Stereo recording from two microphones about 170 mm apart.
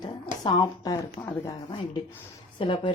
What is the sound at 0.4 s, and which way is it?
Speech, 25° left (ahead or behind).